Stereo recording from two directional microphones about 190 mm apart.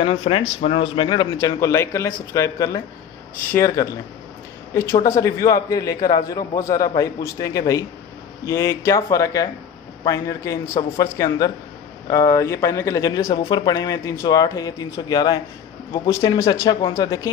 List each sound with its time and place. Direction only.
0.0 s a man's voice: 30° left (ahead or behind)
5.0 s a man's voice: 15° left (ahead or behind)